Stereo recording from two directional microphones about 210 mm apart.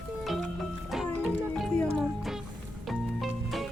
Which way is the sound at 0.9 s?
Centre (ahead or behind).